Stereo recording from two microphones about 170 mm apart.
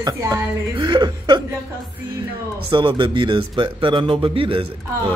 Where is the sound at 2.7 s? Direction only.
30° right (ahead or behind).